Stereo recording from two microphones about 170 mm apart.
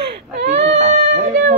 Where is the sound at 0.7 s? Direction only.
45° right (ahead or behind).